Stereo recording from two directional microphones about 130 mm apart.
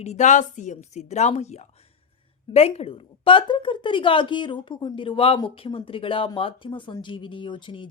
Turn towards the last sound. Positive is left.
turn(degrees=40)  # may be behind; listen again after turning